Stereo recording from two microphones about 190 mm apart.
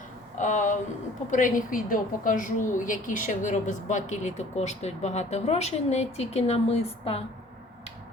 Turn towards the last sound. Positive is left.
turn(degrees=30)  # may be behind; listen again after turning